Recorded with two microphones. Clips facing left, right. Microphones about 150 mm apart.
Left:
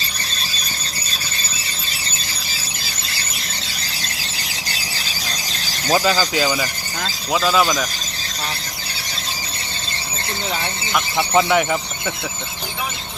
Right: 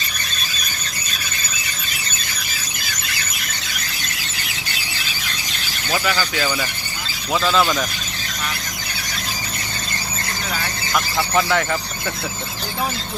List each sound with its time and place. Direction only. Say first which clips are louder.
0.3 s squeal: even; 30° left (ahead or behind)
4.4 s squeal: left 1 dB; 35° left (ahead or behind)
5.6 s a sound: left 5 dB; 35° left (ahead or behind)
6.3 s speech: left 3 dB; 15° left (ahead or behind)
11.2 s speech: left 4 dB; 20° left (ahead or behind)